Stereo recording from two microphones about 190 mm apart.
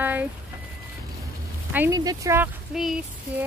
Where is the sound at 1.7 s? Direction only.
15° right (ahead or behind).